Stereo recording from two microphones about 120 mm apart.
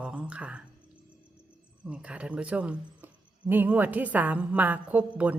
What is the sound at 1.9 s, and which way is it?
Speech, 10° right (ahead or behind).